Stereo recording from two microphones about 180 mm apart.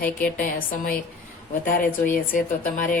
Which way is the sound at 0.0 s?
50° left (ahead or behind).